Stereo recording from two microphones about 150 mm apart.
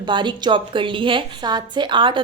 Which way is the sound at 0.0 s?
30° right (ahead or behind).